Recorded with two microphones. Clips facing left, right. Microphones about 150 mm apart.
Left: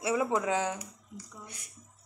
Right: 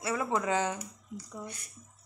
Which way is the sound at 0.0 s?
10° left (ahead or behind).